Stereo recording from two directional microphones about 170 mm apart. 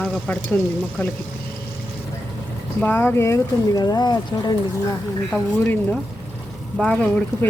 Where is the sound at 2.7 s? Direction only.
10° left (ahead or behind).